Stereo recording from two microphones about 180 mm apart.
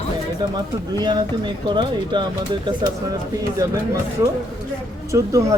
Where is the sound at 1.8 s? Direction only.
25° right (ahead or behind).